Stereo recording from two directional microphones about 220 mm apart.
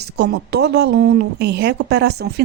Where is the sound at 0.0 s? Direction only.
50° right (ahead or behind).